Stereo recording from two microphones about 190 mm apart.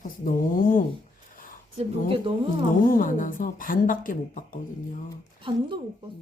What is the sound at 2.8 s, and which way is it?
A woman's voice, 45° left (ahead or behind).